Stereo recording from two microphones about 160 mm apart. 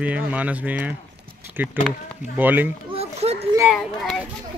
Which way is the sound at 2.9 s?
40° right (ahead or behind).